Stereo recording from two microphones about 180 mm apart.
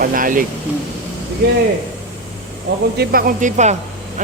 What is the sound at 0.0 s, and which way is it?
Speech, 50° right (ahead or behind).